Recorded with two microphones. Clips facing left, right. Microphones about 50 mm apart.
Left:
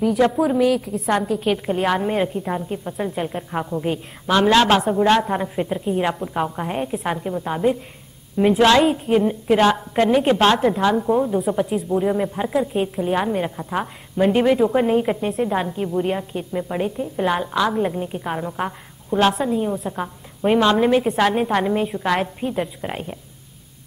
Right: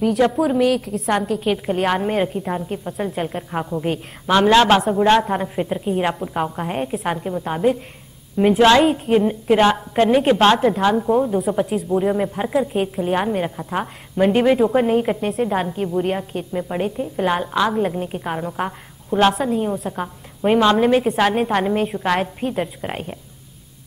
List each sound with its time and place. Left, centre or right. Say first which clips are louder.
0.2 s a woman's voice: even; centre
9.3 s a woman's voice: right 1 dB; centre
18.3 s a woman's voice: right 1 dB; centre